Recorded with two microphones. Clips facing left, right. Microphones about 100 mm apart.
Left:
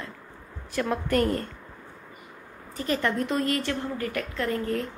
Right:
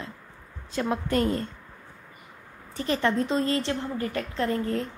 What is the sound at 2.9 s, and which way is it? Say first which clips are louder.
A woman's voice: right 1 dB; 30° right (ahead or behind).